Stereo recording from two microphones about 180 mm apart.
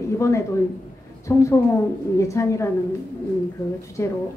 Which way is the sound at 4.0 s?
15° left (ahead or behind).